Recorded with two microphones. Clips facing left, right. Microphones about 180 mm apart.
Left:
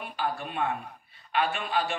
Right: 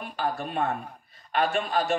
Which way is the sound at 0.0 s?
40° right (ahead or behind).